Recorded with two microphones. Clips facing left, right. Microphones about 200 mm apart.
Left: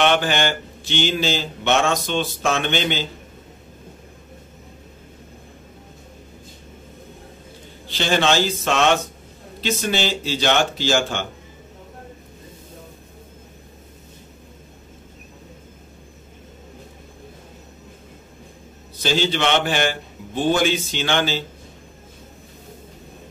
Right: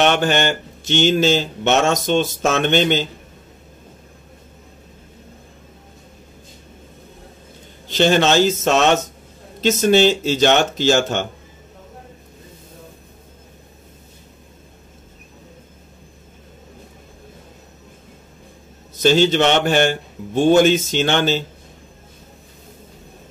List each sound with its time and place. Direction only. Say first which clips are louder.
0.0 s speech: right 2 dB; 45° right (ahead or behind)
7.9 s speech: right 5 dB; 45° right (ahead or behind)
19.1 s speech: right 3 dB; 45° right (ahead or behind)